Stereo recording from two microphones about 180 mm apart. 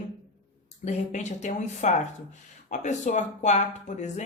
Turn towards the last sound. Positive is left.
turn(degrees=40)  # may be behind; listen again after turning